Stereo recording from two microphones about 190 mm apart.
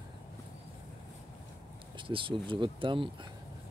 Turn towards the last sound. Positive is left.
turn(degrees=-25)  # may be behind; listen again after turning